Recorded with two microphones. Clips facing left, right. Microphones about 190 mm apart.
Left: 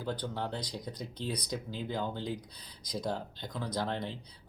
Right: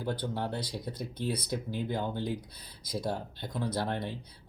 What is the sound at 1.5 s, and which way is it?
Speech, 60° right (ahead or behind).